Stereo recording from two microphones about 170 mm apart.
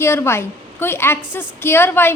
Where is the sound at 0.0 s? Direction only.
15° left (ahead or behind).